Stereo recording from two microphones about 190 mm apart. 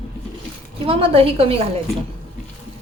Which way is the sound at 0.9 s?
30° right (ahead or behind).